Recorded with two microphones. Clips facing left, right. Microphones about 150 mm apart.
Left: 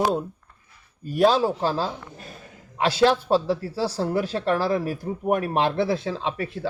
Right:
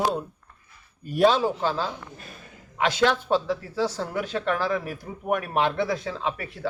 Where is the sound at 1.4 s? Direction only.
35° left (ahead or behind).